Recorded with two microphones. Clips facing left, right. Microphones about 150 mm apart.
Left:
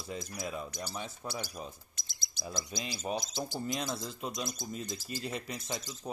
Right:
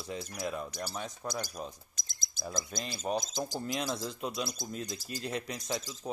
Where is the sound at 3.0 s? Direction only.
40° right (ahead or behind).